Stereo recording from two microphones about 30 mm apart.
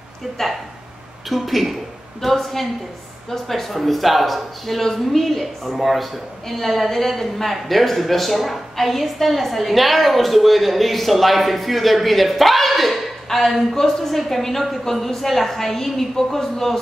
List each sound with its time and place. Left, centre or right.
1.3 s a woman's voice: centre